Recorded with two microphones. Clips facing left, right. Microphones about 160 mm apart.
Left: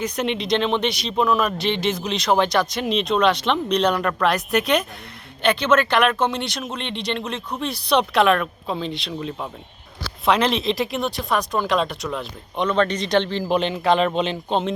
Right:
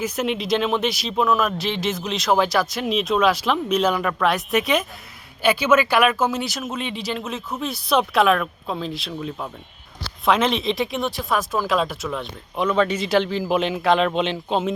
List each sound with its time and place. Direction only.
0.0 s speech: 5° right (ahead or behind)